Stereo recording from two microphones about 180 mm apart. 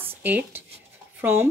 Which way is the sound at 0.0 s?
10° right (ahead or behind).